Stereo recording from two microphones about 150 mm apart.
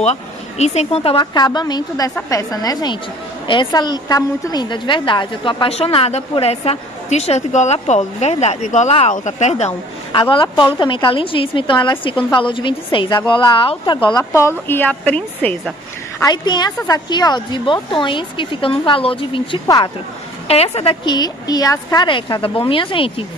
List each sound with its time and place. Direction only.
0.0 s speech: 45° left (ahead or behind)
1.2 s a woman's voice: 25° left (ahead or behind); by 9.8 s 45° left (ahead or behind)
10.3 s a woman's voice: 30° left (ahead or behind)
14.7 s a woman's voice: 10° left (ahead or behind)
16.2 s a woman's voice: 25° left (ahead or behind)
20.4 s a woman's voice: 45° left (ahead or behind)